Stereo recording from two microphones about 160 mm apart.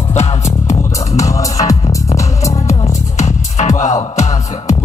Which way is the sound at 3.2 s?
50° left (ahead or behind).